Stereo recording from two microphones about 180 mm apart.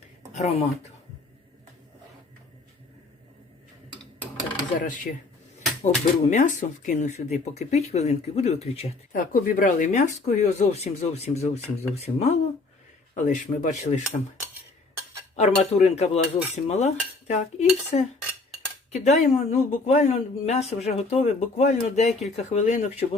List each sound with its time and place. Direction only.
0.3 s speech: 35° left (ahead or behind)
4.8 s speech: 45° left (ahead or behind)
9.1 s speech: 50° left (ahead or behind)
15.4 s speech: 40° left (ahead or behind)